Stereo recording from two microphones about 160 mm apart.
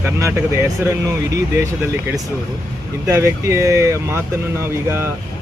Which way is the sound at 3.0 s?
15° right (ahead or behind).